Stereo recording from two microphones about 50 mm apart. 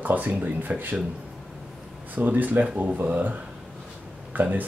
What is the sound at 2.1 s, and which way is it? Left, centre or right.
Speech, right.